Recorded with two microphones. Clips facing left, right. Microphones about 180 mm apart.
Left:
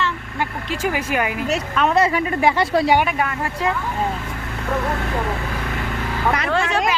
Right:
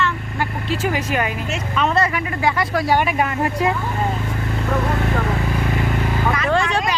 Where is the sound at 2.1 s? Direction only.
25° left (ahead or behind).